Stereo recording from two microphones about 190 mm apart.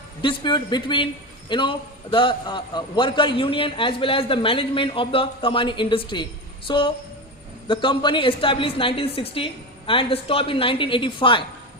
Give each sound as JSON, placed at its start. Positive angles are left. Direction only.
{"t": 0.2, "sound": "a man's voice", "side_deg": 25}